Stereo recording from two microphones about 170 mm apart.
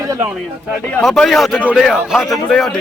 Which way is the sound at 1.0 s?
Centre (ahead or behind).